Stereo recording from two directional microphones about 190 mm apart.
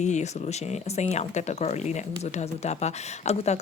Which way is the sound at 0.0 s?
35° left (ahead or behind).